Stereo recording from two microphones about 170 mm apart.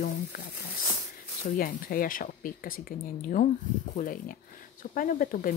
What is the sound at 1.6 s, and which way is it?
Speech, 55° left (ahead or behind).